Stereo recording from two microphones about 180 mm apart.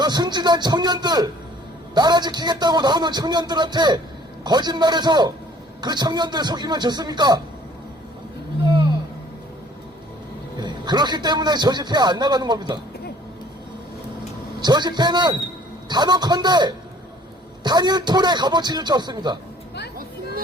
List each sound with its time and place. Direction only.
0.0 s a man's voice: 25° right (ahead or behind)
10.6 s a man's voice: 25° right (ahead or behind)
14.6 s a man's voice: 25° right (ahead or behind)